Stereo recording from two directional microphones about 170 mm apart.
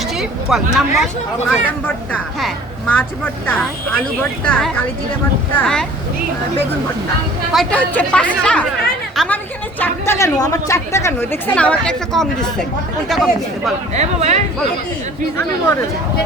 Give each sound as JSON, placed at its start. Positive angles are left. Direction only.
{"t": 0.2, "sound": "a woman's voice", "side_deg": 0}
{"t": 7.5, "sound": "a woman's voice", "side_deg": 5}
{"t": 9.1, "sound": "a sound", "side_deg": 5}
{"t": 9.8, "sound": "a woman's voice", "side_deg": 15}
{"t": 13.9, "sound": "speech", "side_deg": -40}